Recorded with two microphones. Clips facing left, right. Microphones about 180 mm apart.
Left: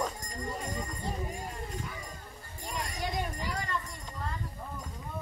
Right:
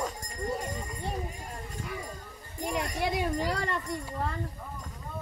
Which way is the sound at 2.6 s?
65° right (ahead or behind).